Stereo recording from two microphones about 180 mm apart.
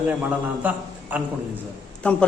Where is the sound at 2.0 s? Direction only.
5° left (ahead or behind).